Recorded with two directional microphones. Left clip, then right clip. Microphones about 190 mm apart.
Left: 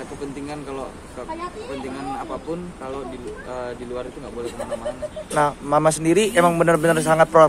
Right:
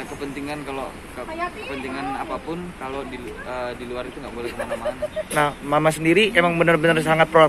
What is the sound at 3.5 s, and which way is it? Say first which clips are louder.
Speech: right 1 dB; 10° left (ahead or behind).